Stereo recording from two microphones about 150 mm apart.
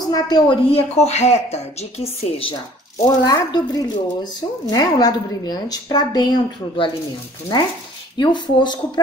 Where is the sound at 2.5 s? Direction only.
25° left (ahead or behind).